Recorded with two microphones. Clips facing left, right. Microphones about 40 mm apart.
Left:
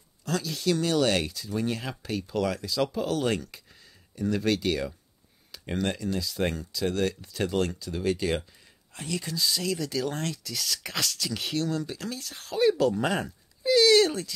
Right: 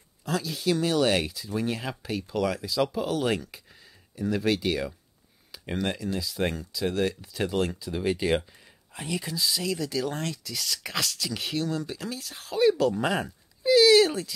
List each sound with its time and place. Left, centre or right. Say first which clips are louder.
0.2 s speech: even; centre
9.2 s speech: left 1 dB; centre